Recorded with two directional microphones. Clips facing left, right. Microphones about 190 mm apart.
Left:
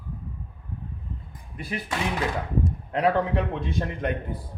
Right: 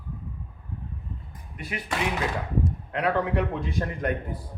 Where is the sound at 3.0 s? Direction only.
25° left (ahead or behind).